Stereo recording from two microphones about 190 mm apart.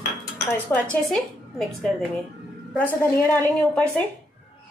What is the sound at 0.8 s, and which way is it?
A woman's voice, 5° left (ahead or behind).